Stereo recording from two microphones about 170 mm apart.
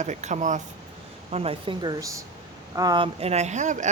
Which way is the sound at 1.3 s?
35° right (ahead or behind).